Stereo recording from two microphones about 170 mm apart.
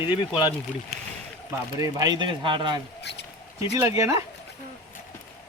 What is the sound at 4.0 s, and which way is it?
Speech, 15° right (ahead or behind).